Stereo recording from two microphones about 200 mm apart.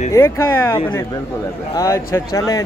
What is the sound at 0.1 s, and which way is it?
Speech, 10° left (ahead or behind).